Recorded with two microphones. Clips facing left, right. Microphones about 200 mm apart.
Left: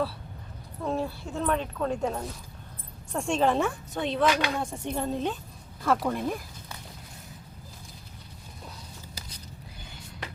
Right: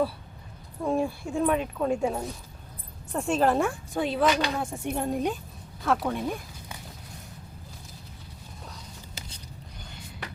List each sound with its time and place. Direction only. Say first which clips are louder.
0.9 s speech: right 3 dB; 10° right (ahead or behind)
5.8 s speech: even; centre (ahead or behind)